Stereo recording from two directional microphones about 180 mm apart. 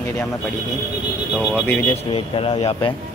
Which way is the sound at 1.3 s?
5° right (ahead or behind).